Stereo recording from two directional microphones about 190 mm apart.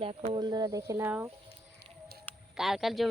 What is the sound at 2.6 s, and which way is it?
Speech, centre (ahead or behind).